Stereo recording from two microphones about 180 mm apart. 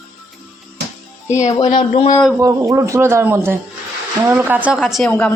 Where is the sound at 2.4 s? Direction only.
15° right (ahead or behind); by 5.1 s centre (ahead or behind).